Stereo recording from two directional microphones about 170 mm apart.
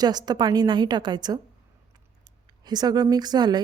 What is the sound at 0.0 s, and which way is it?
A woman's voice, 25° right (ahead or behind).